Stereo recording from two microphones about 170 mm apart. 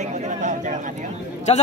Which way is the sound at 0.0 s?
45° right (ahead or behind).